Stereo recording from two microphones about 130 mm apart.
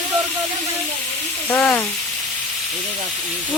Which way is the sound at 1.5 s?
15° left (ahead or behind).